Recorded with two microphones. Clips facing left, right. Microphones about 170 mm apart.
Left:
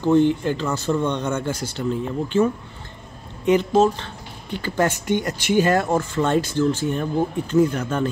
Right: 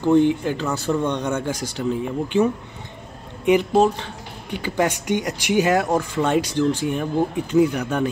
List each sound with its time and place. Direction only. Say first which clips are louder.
0.0 s speech: even; 15° right (ahead or behind)
4.5 s speech: even; 10° right (ahead or behind)